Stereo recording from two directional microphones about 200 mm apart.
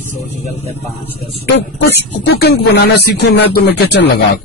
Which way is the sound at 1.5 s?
60° left (ahead or behind).